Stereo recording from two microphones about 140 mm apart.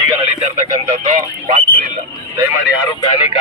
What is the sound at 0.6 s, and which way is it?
Radio, 55° right (ahead or behind).